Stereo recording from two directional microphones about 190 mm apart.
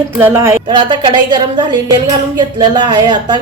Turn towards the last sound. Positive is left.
turn(degrees=-25)  # may be behind; listen again after turning